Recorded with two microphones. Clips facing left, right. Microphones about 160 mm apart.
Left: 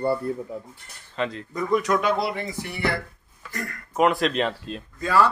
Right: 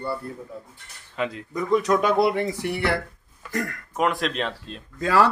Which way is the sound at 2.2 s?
60° right (ahead or behind).